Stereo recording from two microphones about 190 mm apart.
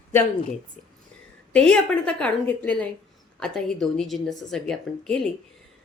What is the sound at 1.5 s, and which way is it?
A woman's voice, 5° left (ahead or behind).